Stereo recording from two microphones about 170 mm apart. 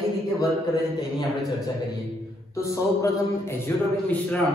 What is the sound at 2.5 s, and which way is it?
A man's voice, 15° left (ahead or behind).